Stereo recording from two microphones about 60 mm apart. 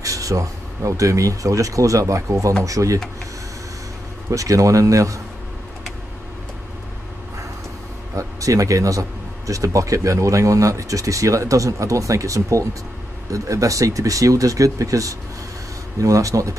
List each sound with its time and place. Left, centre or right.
0.0 s speech: right
4.3 s speech: right
8.2 s speech: right